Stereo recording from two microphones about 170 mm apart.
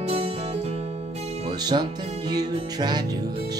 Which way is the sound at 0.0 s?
35° right (ahead or behind).